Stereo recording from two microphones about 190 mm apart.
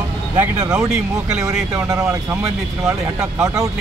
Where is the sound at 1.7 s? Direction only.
15° right (ahead or behind).